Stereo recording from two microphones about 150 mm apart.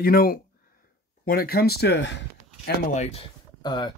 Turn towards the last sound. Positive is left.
turn(degrees=30)  # may be behind; listen again after turning